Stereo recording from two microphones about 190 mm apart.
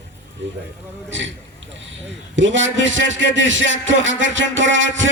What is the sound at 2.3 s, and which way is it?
A man's voice, 80° right.